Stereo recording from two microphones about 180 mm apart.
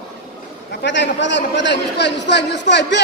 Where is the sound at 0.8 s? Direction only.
80° left.